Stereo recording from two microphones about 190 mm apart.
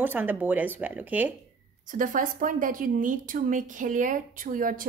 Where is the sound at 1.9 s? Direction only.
45° right (ahead or behind).